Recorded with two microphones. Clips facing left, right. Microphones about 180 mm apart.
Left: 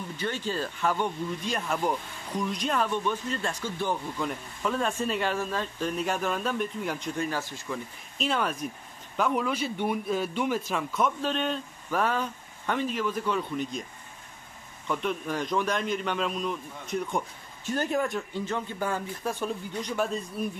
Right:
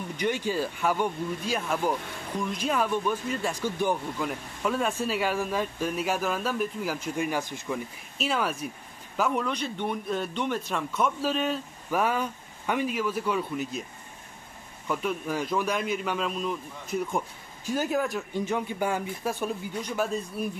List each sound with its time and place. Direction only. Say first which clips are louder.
0.2 s speech: right 4 dB; 15° right (ahead or behind)
8.2 s a man's voice: even; 5° right (ahead or behind)
14.9 s a man's voice: right 1 dB; 5° right (ahead or behind)
18.3 s speech: right 3 dB; 15° right (ahead or behind)